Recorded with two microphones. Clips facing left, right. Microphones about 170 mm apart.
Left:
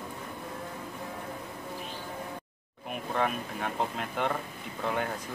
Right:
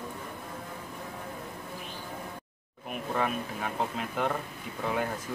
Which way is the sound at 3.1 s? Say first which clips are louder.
Even; centre (ahead or behind).